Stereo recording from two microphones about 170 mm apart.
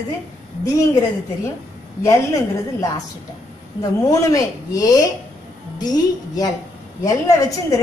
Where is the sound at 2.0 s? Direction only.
20° left (ahead or behind).